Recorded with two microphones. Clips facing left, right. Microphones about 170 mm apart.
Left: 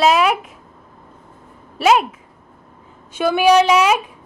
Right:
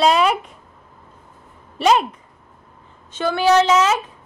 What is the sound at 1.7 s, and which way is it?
Speech, 5° left (ahead or behind).